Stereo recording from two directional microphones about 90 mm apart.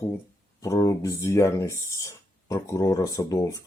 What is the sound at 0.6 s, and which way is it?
Speech, 35° left (ahead or behind).